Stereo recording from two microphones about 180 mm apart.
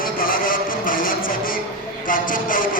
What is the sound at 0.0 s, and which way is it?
Vehicle, 50° left (ahead or behind).